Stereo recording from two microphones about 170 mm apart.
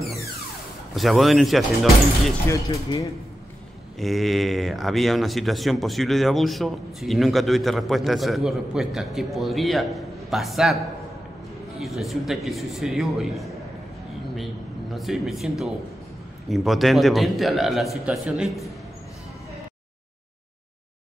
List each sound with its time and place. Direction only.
0.9 s speech: centre (ahead or behind)
2.4 s speech: 15° left (ahead or behind)
4.0 s speech: centre (ahead or behind)
11.8 s speech: centre (ahead or behind)
15.0 s speech: centre (ahead or behind)